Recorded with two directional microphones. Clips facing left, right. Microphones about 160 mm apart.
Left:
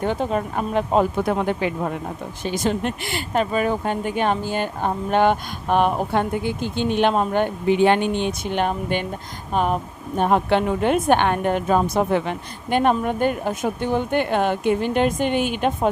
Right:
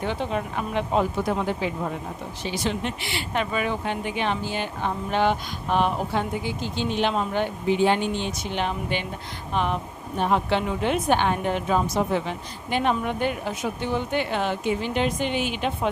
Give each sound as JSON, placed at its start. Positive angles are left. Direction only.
{"t": 0.0, "sound": "speech", "side_deg": 45}
{"t": 1.3, "sound": "speech", "side_deg": 60}